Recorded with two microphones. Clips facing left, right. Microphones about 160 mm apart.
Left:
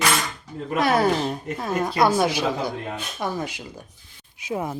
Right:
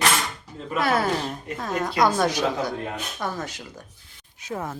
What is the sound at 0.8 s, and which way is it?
Speech, 15° left (ahead or behind).